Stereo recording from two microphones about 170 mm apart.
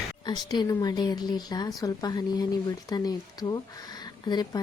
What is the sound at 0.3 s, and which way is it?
Speech, 25° left (ahead or behind).